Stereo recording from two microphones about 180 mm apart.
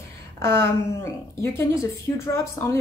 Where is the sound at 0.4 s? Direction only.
15° left (ahead or behind).